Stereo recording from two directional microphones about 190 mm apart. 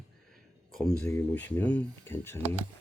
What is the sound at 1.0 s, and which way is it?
Speech, 10° left (ahead or behind).